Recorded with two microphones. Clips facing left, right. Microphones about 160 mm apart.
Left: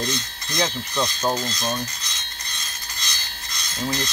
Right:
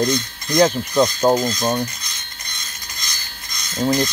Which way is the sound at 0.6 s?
45° right (ahead or behind).